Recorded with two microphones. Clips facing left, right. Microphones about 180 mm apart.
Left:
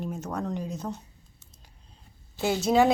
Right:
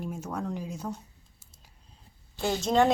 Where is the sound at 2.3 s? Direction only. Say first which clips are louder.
Left 2 dB; 5° left (ahead or behind).